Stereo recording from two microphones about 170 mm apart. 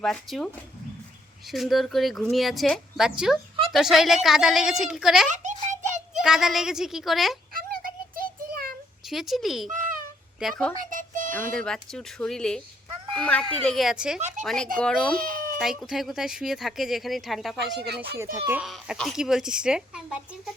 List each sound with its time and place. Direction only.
0.0 s speech: centre (ahead or behind)
5.3 s a sound: 45° right (ahead or behind)
6.1 s speech: 5° right (ahead or behind)
7.5 s child singing: 60° right (ahead or behind)
9.0 s speech: centre (ahead or behind)
10.8 s music: 55° right (ahead or behind)
11.3 s speech: 10° left (ahead or behind)
15.1 s cat: 55° right (ahead or behind)
15.5 s speech: centre (ahead or behind)
17.7 s speech: 75° right (ahead or behind)
18.3 s a child's voice: 15° right (ahead or behind)
18.6 s speech: centre (ahead or behind)